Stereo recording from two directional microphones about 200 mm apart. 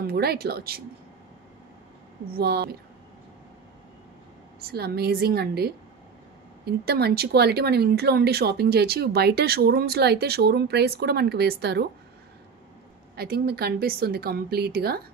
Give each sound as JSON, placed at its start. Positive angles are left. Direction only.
{"t": 0.0, "sound": "speech", "side_deg": -50}
{"t": 2.3, "sound": "speech", "side_deg": -55}
{"t": 4.6, "sound": "speech", "side_deg": -50}
{"t": 13.1, "sound": "speech", "side_deg": -50}